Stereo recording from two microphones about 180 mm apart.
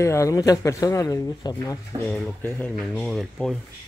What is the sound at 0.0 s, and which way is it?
Speech, 15° left (ahead or behind).